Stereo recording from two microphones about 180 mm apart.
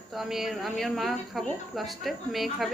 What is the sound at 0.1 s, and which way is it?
Speech, centre (ahead or behind).